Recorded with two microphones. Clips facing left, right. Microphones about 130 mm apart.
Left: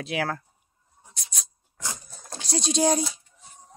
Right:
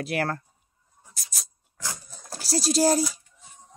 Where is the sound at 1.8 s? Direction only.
20° left (ahead or behind).